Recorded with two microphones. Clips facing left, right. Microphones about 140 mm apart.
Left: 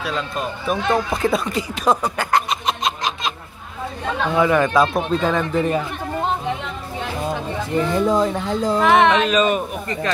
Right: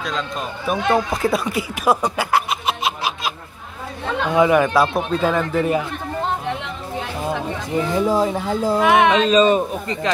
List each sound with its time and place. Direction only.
0.7 s speech: 5° right (ahead or behind)
4.3 s speech: 15° right (ahead or behind)
7.7 s speech: 5° right (ahead or behind)
9.3 s a man's voice: 30° right (ahead or behind)